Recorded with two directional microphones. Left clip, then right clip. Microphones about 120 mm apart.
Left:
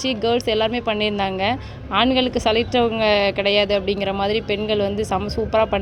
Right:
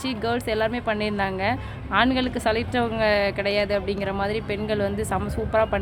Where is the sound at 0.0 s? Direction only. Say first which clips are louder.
Left 6 dB; 30° left (ahead or behind).